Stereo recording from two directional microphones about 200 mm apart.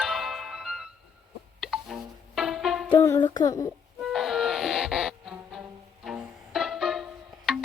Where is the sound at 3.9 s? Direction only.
Centre (ahead or behind).